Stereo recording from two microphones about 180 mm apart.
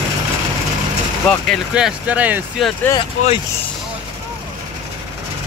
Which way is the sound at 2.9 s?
30° left (ahead or behind).